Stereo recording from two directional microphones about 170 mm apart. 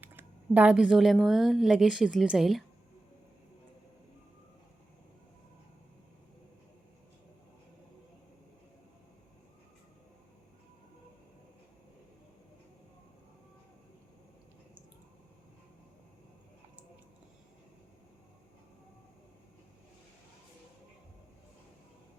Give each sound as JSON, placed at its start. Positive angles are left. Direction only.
{"t": 0.0, "sound": "a woman's voice", "side_deg": -10}